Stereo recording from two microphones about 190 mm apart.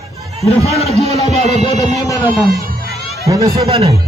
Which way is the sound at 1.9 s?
20° left (ahead or behind).